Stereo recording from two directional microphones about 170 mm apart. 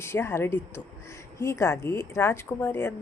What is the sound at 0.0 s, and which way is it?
Speech, 15° left (ahead or behind).